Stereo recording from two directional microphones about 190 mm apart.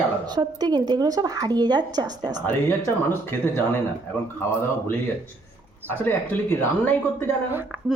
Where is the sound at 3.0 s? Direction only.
10° left (ahead or behind).